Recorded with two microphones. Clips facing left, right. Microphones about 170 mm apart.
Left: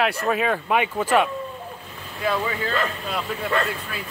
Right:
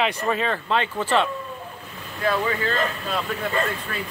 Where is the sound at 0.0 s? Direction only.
5° left (ahead or behind).